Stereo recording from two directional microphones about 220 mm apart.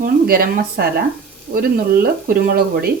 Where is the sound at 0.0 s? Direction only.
40° right (ahead or behind).